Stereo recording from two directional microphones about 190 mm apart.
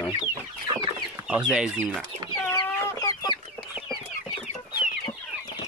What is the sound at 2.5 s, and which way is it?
Chicken, 20° left (ahead or behind).